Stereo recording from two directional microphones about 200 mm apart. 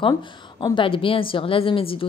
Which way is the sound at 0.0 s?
25° left (ahead or behind).